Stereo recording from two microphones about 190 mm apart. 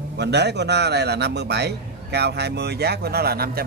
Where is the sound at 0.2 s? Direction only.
60° right (ahead or behind).